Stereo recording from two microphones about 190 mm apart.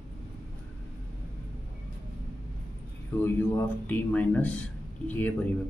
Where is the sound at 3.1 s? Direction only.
10° left (ahead or behind).